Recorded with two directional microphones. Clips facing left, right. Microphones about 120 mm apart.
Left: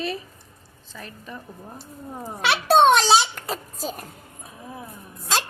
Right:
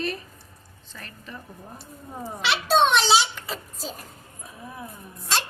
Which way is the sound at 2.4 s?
55° left (ahead or behind).